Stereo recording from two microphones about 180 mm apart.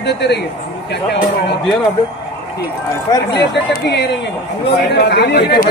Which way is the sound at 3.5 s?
70° left (ahead or behind).